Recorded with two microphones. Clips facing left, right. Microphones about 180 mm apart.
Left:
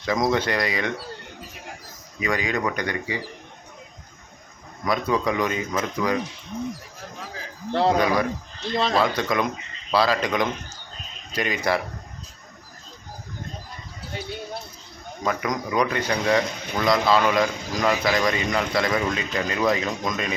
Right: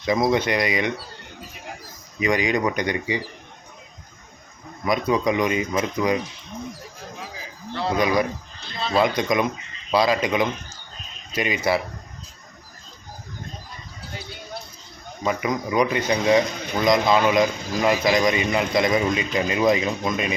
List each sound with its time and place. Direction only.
0.0 s speech: 10° right (ahead or behind)
2.2 s speech: 20° right (ahead or behind)
4.9 s speech: 15° right (ahead or behind)
7.9 s speech: 15° right (ahead or behind)
8.7 s speech: 90° left
9.0 s speech: 15° right (ahead or behind)
15.2 s speech: 5° right (ahead or behind)